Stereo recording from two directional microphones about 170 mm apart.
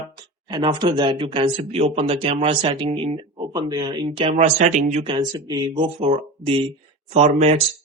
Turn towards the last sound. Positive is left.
turn(degrees=-45)  # may be behind; listen again after turning